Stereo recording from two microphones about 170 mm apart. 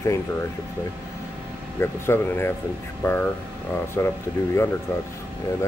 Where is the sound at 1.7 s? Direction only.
15° left (ahead or behind).